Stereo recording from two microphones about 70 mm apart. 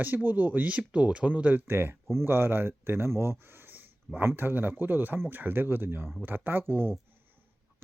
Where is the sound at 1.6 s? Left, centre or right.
Right.